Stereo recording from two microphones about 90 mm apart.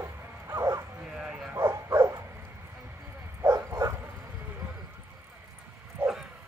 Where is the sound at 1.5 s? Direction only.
30° right (ahead or behind).